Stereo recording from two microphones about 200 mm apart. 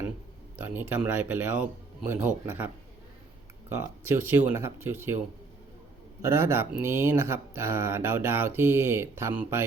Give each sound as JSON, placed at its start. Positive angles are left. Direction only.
{"t": 0.5, "sound": "speech", "side_deg": -10}
{"t": 3.7, "sound": "speech", "side_deg": -10}
{"t": 6.2, "sound": "speech", "side_deg": -15}